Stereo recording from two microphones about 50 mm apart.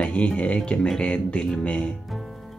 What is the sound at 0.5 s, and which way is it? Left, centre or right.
Speech, centre.